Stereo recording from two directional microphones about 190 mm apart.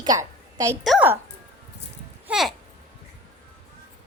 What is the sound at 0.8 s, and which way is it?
Speech, centre (ahead or behind).